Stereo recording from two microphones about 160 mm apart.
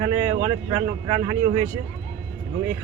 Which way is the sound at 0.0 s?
15° right (ahead or behind).